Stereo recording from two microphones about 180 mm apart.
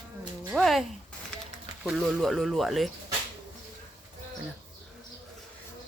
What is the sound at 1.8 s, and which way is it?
Speech, centre (ahead or behind).